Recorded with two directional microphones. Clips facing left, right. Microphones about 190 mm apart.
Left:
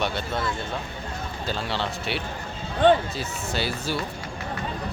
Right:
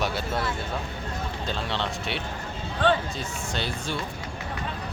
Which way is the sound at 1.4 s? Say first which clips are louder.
Left 2 dB; 5° left (ahead or behind).